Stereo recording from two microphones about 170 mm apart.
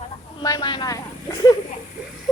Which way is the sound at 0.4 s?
25° left (ahead or behind).